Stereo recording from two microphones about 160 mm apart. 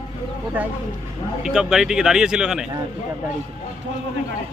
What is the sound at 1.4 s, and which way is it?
A man's voice, 5° right (ahead or behind).